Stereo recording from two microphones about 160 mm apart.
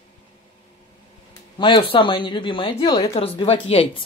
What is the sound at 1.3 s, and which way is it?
Speech, 30° left (ahead or behind).